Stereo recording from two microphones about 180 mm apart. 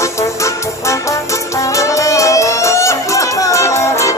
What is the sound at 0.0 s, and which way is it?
Music, 15° left (ahead or behind).